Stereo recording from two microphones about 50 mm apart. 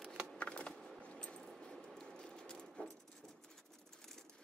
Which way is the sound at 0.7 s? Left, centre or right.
Centre.